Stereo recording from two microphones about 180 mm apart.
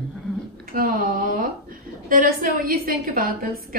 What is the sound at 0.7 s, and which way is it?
A woman's voice, 50° right (ahead or behind).